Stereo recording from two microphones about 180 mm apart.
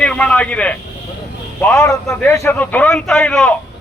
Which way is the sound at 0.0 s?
5° left (ahead or behind).